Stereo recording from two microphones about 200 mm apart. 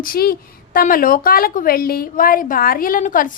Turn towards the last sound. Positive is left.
turn(degrees=40)  # may be behind; listen again after turning